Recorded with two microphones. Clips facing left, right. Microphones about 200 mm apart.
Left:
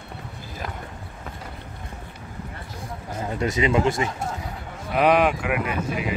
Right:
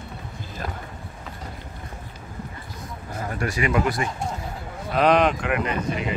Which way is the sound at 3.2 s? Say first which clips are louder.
Left 3 dB; 20° left (ahead or behind).